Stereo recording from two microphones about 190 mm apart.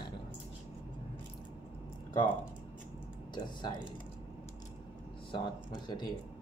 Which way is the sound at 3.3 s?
25° left (ahead or behind).